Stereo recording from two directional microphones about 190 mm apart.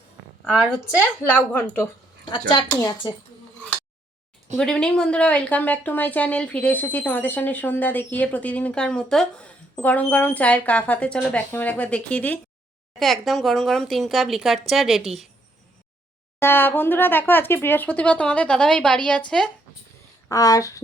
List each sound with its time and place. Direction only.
1.5 s speech: 10° left (ahead or behind)
2.5 s a woman's voice: 20° left (ahead or behind)
4.5 s speech: 5° left (ahead or behind)
16.4 s speech: 10° left (ahead or behind)
20.2 s speech: 15° left (ahead or behind)